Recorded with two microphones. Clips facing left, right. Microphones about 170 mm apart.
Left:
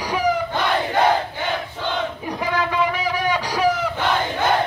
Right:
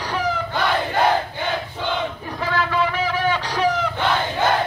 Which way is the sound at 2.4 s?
15° left (ahead or behind).